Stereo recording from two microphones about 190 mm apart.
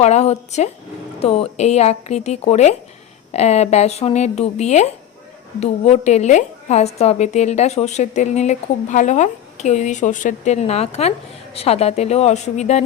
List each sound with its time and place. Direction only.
0.0 s a woman's voice: 35° left (ahead or behind)